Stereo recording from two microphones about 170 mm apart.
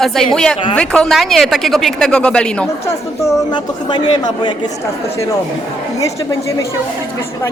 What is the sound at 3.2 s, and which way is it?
A man's voice, 20° left (ahead or behind).